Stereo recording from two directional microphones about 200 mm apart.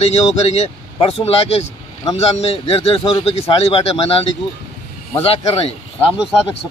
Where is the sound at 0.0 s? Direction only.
35° left (ahead or behind).